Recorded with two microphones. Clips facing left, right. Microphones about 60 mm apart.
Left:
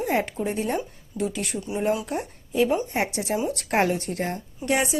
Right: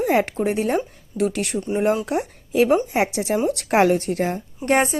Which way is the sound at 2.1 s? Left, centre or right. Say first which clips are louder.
Right 6 dB; right.